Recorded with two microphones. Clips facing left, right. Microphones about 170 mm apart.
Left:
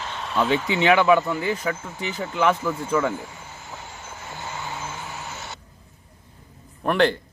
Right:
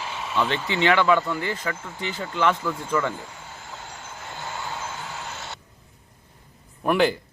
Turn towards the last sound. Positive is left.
turn(degrees=-5)  # may be behind; listen again after turning